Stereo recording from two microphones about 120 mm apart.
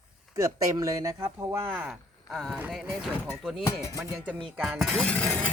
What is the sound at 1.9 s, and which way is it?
Speech, centre (ahead or behind).